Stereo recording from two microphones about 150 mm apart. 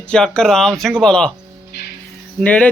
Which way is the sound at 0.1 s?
5° left (ahead or behind).